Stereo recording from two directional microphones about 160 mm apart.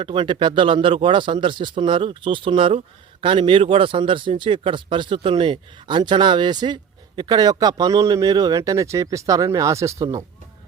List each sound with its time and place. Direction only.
0.0 s speech: 30° right (ahead or behind)